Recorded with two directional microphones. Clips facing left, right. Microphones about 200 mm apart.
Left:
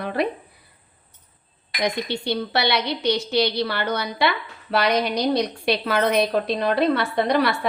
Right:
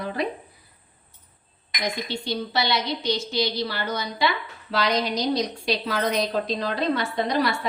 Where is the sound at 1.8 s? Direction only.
65° left (ahead or behind).